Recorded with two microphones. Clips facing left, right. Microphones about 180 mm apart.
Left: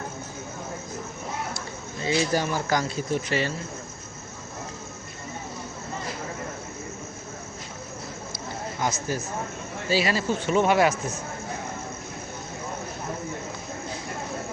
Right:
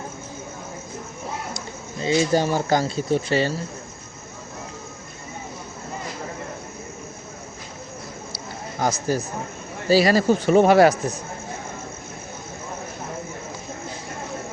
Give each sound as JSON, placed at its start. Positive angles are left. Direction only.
{"t": 2.0, "sound": "speech", "side_deg": -25}
{"t": 8.8, "sound": "speech", "side_deg": -35}